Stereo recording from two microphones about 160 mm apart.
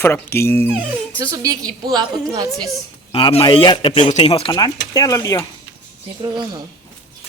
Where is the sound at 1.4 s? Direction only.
25° right (ahead or behind).